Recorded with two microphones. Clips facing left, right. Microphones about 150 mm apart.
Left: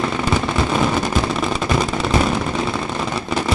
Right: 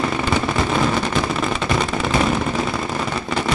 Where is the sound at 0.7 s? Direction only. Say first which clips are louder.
Left 2 dB; centre (ahead or behind).